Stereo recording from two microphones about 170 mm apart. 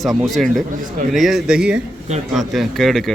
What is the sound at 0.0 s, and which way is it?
Speech, centre (ahead or behind).